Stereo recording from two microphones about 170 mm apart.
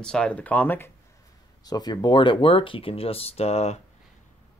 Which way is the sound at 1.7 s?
25° left (ahead or behind).